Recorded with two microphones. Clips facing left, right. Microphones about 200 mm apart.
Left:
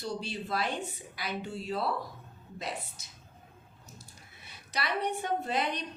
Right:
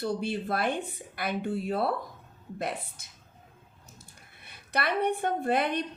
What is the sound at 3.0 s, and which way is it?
A woman's voice, 55° right (ahead or behind).